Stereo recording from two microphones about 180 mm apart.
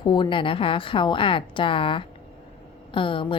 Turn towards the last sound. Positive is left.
turn(degrees=30)  # may be behind; listen again after turning